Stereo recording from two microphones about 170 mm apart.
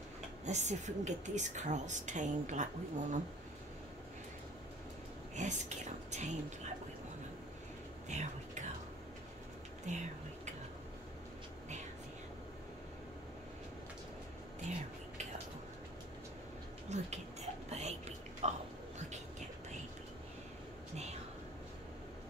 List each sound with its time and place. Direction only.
0.5 s speech: 45° right (ahead or behind)
5.3 s speech: 45° right (ahead or behind)
8.1 s whispering: 45° right (ahead or behind)
9.9 s speech: 45° right (ahead or behind)
16.9 s a sound: 40° right (ahead or behind)
20.9 s whispering: 40° right (ahead or behind)